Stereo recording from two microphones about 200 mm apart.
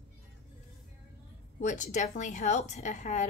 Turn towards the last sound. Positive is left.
turn(degrees=35)  # may be behind; listen again after turning